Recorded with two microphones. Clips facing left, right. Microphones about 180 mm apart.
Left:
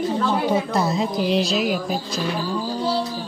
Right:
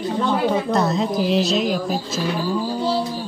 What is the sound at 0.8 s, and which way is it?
Speech, centre (ahead or behind).